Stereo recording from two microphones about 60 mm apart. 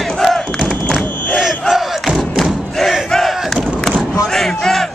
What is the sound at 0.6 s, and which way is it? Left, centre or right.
Crowd, left.